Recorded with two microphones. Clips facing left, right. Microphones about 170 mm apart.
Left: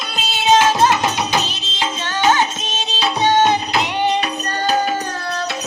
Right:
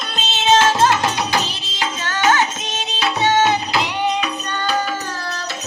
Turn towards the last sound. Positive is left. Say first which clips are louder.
# left 3 dB
turn(degrees=50)  # may be behind; listen again after turning